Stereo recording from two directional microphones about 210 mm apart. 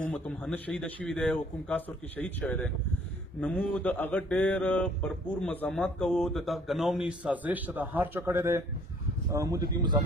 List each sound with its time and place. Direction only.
0.1 s speech: 5° left (ahead or behind); by 9.7 s 15° right (ahead or behind)